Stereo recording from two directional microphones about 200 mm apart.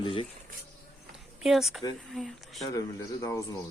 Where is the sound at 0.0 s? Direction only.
25° left (ahead or behind).